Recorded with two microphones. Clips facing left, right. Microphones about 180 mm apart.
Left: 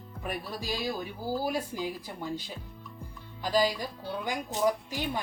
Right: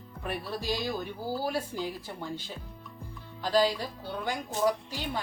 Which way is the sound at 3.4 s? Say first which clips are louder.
Right 1 dB; 10° left (ahead or behind).